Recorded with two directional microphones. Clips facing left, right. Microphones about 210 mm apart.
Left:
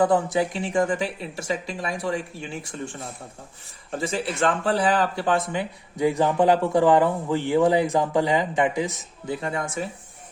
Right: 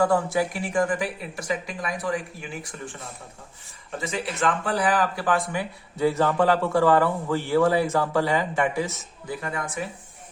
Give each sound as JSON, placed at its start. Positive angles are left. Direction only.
{"t": 0.0, "sound": "speech", "side_deg": 20}
{"t": 3.9, "sound": "speech", "side_deg": 30}